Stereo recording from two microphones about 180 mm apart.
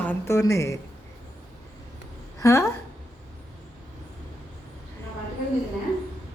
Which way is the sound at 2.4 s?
15° left (ahead or behind).